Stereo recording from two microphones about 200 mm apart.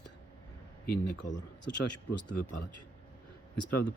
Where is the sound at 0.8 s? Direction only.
50° left (ahead or behind).